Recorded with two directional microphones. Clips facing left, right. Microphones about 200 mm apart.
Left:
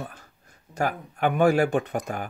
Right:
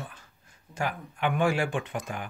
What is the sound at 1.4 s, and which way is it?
Speech, 40° left (ahead or behind).